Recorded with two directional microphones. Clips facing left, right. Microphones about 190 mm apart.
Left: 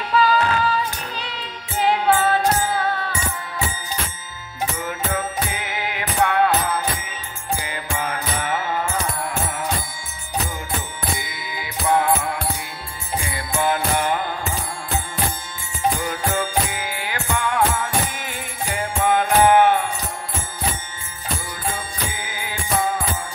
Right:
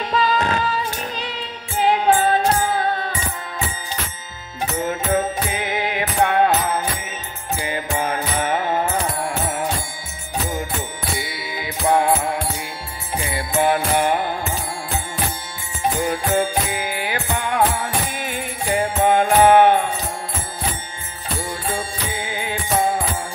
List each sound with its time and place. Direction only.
0.1 s music: 20° right (ahead or behind)
1.9 s music: 20° right (ahead or behind)
4.7 s music: 25° right (ahead or behind)
11.1 s mantra: 20° right (ahead or behind)
13.3 s music: 20° right (ahead or behind)
15.8 s music: 20° right (ahead or behind)
21.5 s music: 25° right (ahead or behind)